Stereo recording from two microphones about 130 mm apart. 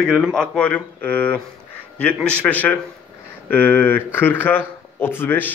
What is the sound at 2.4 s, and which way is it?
Speech, 10° left (ahead or behind).